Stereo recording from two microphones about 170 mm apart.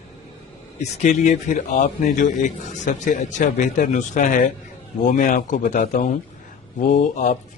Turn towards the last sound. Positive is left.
turn(degrees=45)  # may be behind; listen again after turning